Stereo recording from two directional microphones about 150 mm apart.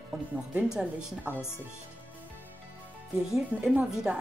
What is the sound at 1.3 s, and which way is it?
Speech, 15° left (ahead or behind).